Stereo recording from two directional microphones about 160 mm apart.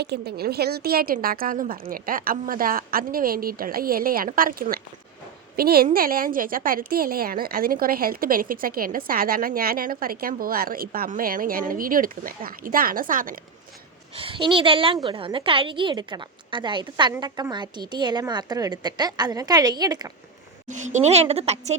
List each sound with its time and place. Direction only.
0.0 s a woman's voice: 90° right; by 13.4 s 60° right (ahead or behind)
14.2 s a woman's voice: 35° right (ahead or behind)
20.7 s a woman's voice: 50° right (ahead or behind)